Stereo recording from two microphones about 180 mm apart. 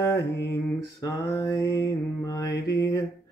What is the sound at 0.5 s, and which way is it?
Mantra, 20° left (ahead or behind).